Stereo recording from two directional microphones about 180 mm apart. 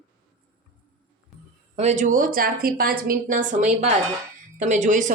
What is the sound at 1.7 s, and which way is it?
A woman's voice, 40° right (ahead or behind).